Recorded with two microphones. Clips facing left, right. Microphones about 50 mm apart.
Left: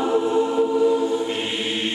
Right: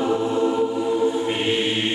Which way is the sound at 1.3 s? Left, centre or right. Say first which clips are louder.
Right 4 dB; right.